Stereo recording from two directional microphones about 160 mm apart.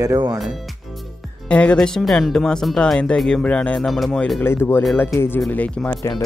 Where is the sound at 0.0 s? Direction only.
20° right (ahead or behind).